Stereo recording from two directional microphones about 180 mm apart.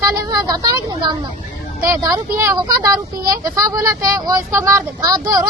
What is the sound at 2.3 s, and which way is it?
Speech, 15° right (ahead or behind).